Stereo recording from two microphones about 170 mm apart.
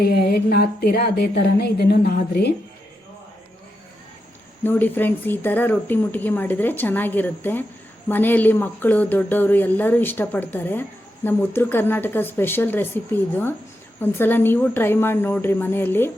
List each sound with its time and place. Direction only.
0.0 s speech: 70° left (ahead or behind)
4.6 s speech: 10° left (ahead or behind)
14.0 s speech: 10° left (ahead or behind)